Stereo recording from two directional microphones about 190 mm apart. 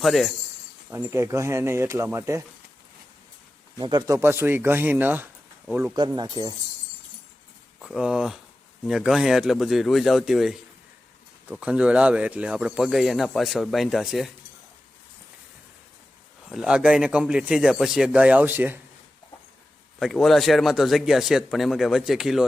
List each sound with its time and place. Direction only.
0.0 s a man's voice: centre (ahead or behind)
0.9 s speech: 15° right (ahead or behind)
3.8 s speech: 25° right (ahead or behind)
5.9 s speech: 20° right (ahead or behind)
7.8 s a man's voice: 5° right (ahead or behind)
16.5 s a man's voice: 5° right (ahead or behind)
20.0 s a man's voice: centre (ahead or behind)